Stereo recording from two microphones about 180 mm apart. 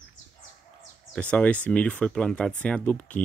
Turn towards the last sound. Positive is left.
turn(degrees=5)  # may be behind; listen again after turning